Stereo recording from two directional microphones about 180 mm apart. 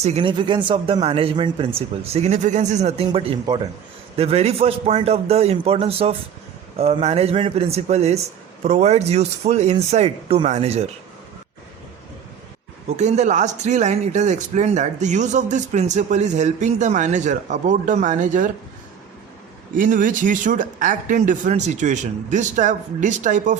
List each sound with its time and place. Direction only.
0.0 s speech: 35° right (ahead or behind)
13.0 s speech: 40° right (ahead or behind)
19.7 s speech: 45° right (ahead or behind)